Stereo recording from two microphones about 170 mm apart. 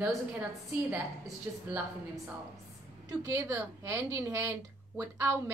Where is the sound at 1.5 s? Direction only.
10° right (ahead or behind).